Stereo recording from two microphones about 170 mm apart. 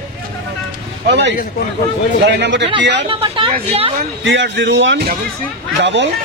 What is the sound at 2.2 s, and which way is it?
Speech, 90° right.